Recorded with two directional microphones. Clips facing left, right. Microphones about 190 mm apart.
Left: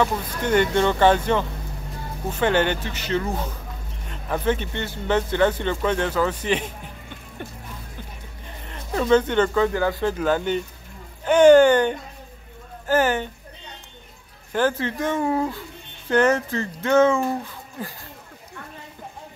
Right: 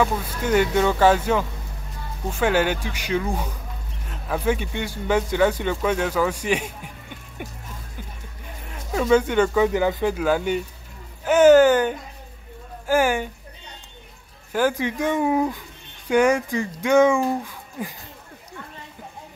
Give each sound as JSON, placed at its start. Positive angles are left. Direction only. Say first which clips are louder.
{"t": 0.0, "sound": "speech", "louder": "even", "side_deg": -5}
{"t": 8.6, "sound": "speech", "louder": "even", "side_deg": -5}
{"t": 14.5, "sound": "speech", "louder": "right 1 dB", "side_deg": -10}